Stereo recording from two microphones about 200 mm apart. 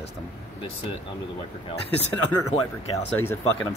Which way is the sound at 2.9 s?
10° left (ahead or behind).